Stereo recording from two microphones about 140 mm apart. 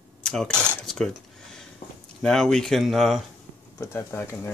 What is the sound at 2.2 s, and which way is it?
Speech, 5° left (ahead or behind).